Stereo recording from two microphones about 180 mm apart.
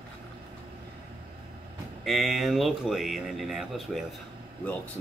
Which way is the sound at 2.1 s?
Centre (ahead or behind).